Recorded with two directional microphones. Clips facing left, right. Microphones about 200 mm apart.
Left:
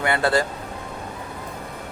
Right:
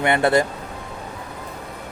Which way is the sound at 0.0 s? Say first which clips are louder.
Right 3 dB; 20° right (ahead or behind).